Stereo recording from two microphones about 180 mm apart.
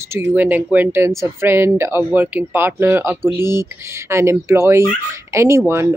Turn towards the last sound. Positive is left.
turn(degrees=-15)  # may be behind; listen again after turning